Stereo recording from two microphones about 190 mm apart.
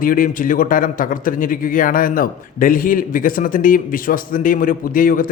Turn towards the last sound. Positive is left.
turn(degrees=45)  # may be behind; listen again after turning